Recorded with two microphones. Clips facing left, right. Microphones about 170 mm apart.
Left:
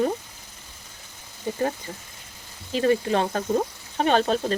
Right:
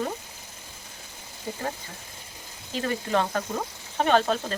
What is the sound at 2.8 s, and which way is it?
Speech, 30° left (ahead or behind).